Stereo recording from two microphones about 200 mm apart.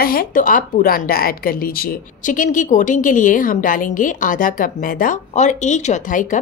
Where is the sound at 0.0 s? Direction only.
45° left (ahead or behind).